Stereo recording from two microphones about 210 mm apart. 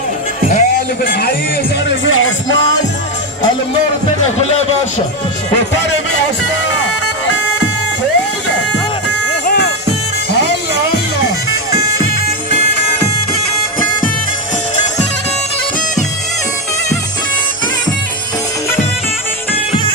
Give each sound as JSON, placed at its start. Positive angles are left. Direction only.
{"t": 0.5, "sound": "music", "side_deg": 40}
{"t": 1.9, "sound": "speech", "side_deg": 65}